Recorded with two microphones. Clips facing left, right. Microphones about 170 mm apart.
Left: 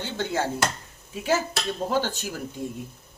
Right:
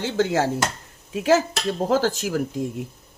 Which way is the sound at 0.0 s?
90° right.